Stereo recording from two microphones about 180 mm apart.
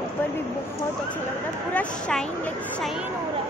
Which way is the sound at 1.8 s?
5° left (ahead or behind).